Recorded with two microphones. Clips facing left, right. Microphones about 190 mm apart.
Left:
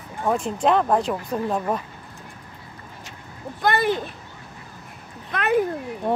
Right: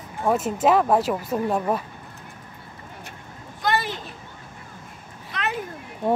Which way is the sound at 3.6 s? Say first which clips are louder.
Left 4 dB; 55° left (ahead or behind).